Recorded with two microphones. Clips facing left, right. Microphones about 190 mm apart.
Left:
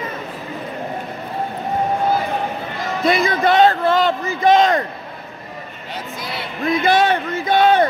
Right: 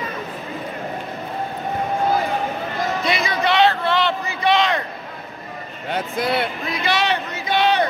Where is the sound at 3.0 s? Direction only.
50° left (ahead or behind).